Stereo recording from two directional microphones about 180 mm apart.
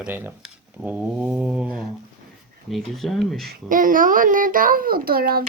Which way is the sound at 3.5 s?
50° right (ahead or behind).